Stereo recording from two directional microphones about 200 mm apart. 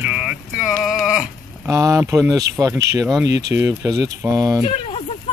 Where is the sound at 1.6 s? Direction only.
15° right (ahead or behind).